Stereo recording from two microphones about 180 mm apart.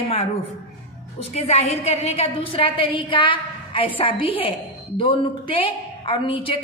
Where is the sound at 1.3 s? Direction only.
35° left (ahead or behind).